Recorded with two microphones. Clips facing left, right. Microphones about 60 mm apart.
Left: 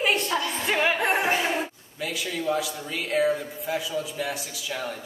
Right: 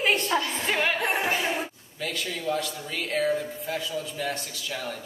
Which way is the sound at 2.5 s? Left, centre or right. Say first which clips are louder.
Left 2 dB; centre.